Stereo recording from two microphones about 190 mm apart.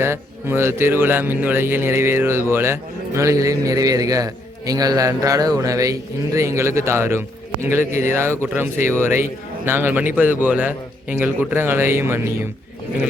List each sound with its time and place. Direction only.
0.0 s a man's voice: 15° right (ahead or behind)